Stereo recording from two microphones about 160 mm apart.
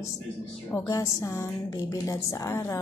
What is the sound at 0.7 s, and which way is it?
A woman's voice, 20° left (ahead or behind).